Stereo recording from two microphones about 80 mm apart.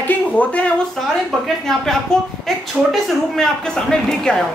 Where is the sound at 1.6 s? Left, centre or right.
Centre.